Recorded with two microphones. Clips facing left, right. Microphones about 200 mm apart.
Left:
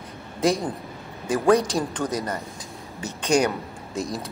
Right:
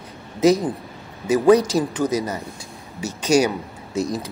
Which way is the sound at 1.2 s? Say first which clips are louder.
Right 5 dB; 5° right (ahead or behind).